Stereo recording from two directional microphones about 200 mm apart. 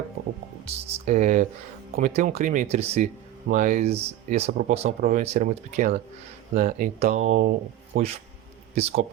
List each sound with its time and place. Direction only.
0.6 s speech: 35° right (ahead or behind)